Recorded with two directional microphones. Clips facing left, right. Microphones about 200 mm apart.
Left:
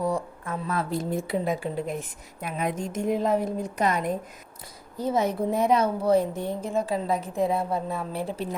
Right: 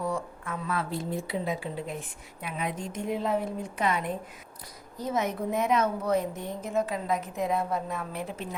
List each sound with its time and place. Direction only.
0.0 s a woman's voice: 35° left (ahead or behind)
4.9 s a woman's voice: 30° left (ahead or behind)